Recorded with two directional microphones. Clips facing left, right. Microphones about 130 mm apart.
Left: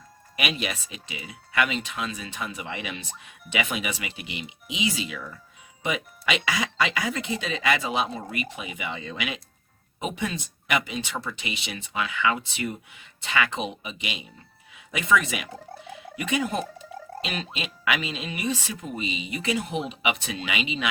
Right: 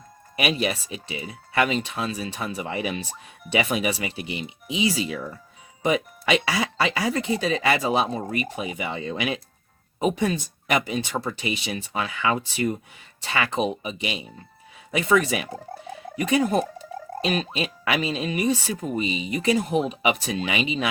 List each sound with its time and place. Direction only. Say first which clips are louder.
0.3 s speech: right 5 dB; 35° right (ahead or behind)